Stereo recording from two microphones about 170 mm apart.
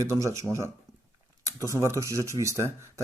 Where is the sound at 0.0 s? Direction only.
15° right (ahead or behind).